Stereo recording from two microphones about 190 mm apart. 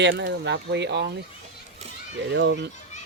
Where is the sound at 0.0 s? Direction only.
70° right (ahead or behind).